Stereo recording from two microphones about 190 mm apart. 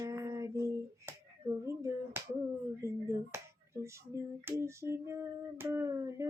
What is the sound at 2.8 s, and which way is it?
Speech, 15° right (ahead or behind).